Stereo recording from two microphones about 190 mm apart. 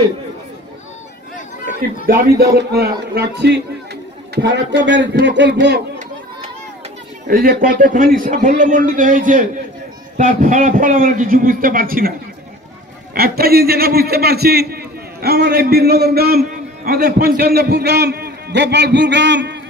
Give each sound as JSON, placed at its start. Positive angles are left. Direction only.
{"t": 2.0, "sound": "a man's voice", "side_deg": -55}
{"t": 7.2, "sound": "a man's voice", "side_deg": -50}
{"t": 13.1, "sound": "a man's voice", "side_deg": -55}